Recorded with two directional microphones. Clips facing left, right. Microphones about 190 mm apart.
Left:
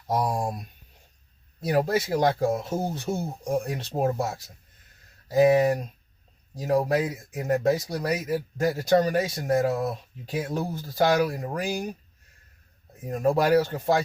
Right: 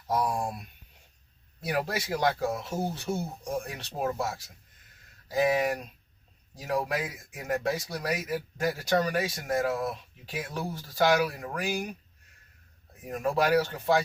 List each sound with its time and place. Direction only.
0.1 s speech: 35° left (ahead or behind)
1.6 s speech: 40° left (ahead or behind)
5.3 s speech: 35° left (ahead or behind)
13.1 s speech: 30° left (ahead or behind)